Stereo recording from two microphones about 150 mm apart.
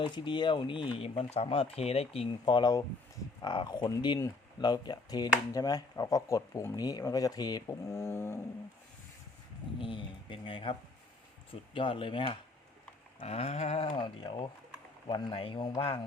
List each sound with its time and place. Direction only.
0.0 s speech: 30° left (ahead or behind)
2.4 s speech: 30° left (ahead or behind)
9.8 s speech: 35° left (ahead or behind)